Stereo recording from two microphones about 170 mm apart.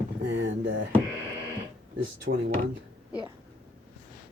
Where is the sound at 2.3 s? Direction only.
90° right.